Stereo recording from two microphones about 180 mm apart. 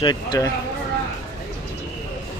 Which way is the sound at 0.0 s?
25° left (ahead or behind).